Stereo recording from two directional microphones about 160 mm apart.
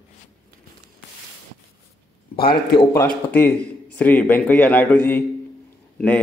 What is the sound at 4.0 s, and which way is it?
A man's voice, 10° left (ahead or behind).